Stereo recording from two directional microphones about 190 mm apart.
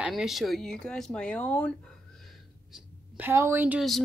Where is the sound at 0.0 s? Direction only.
Centre (ahead or behind).